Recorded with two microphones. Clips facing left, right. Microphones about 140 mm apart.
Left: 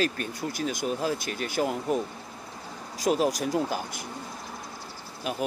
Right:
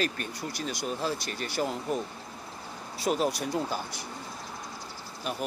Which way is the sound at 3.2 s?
45° left (ahead or behind).